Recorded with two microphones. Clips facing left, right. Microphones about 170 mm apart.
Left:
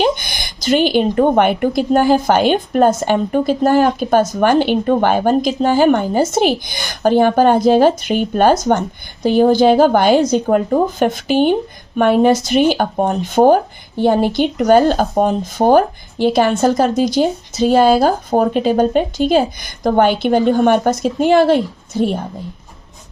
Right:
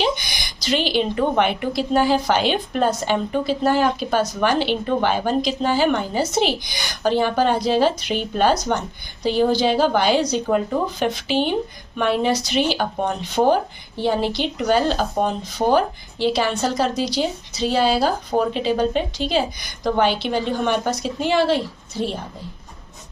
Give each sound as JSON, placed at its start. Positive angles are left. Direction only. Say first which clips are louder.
{"t": 0.0, "sound": "speech", "louder": "left 6 dB", "side_deg": 50}